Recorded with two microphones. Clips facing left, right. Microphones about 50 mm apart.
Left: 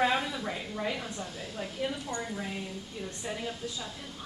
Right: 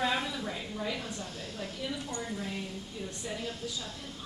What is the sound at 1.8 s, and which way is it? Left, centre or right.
Speech, left.